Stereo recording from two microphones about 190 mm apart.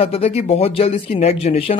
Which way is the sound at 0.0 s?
30° left (ahead or behind).